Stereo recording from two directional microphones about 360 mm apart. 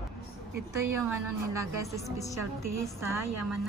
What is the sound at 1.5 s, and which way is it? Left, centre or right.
Speech, centre.